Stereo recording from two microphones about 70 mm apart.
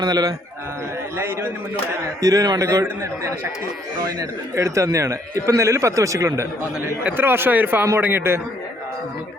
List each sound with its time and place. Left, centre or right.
0.0 s a man's voice: right
2.2 s a man's voice: right
4.2 s speech: right
7.0 s speech: right